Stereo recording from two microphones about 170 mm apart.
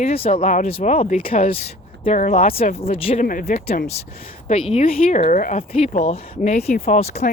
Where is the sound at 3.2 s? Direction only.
55° left (ahead or behind).